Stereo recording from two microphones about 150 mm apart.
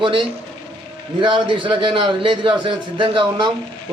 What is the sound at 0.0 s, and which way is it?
A man's voice, 35° right (ahead or behind).